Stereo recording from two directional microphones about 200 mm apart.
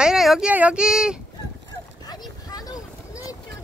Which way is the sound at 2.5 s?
20° left (ahead or behind).